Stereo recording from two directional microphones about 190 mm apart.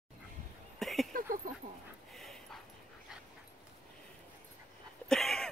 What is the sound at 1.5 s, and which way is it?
Dog, 50° right (ahead or behind).